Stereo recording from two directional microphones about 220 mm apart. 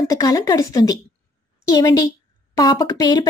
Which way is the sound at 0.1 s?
15° left (ahead or behind).